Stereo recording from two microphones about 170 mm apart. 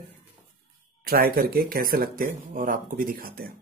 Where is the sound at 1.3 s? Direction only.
60° right (ahead or behind).